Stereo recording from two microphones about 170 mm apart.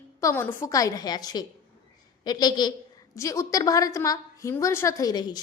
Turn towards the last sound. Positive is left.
turn(degrees=25)  # may be behind; listen again after turning